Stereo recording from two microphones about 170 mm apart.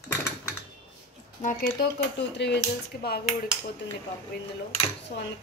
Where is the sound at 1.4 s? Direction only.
65° left (ahead or behind).